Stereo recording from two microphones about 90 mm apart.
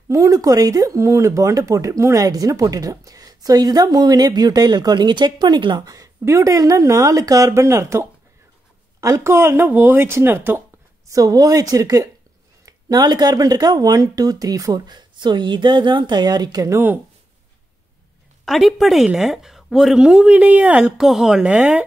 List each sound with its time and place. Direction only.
0.1 s speech: 40° right (ahead or behind); by 5.9 s 60° right (ahead or behind)
5.9 s speech: 35° right (ahead or behind)
11.1 s speech: 40° right (ahead or behind)
18.4 s a woman's voice: centre (ahead or behind)